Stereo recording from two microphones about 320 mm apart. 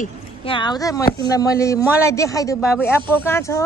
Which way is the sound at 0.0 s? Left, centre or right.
Centre.